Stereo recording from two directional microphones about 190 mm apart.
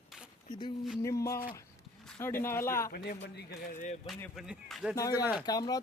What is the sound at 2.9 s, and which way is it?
Speech, 60° left (ahead or behind).